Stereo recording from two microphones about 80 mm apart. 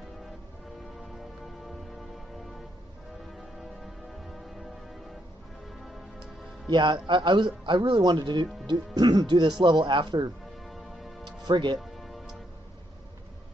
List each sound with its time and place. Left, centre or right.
1.4 s music: centre
6.7 s a man's voice: right
10.7 s music: centre
11.2 s music: right
11.8 s music: centre